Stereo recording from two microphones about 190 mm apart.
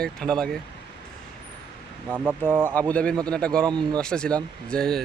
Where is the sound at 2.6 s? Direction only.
10° left (ahead or behind).